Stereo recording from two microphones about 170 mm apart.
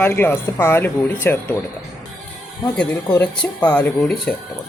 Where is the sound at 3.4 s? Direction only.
10° left (ahead or behind).